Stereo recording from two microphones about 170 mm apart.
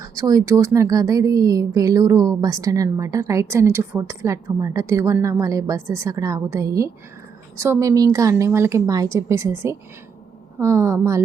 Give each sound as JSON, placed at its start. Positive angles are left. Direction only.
{"t": 0.0, "sound": "a woman's voice", "side_deg": -20}